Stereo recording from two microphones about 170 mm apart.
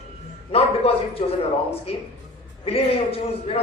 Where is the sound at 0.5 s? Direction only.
35° left (ahead or behind).